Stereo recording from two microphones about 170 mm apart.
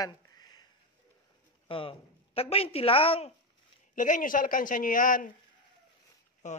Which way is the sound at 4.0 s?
50° left (ahead or behind).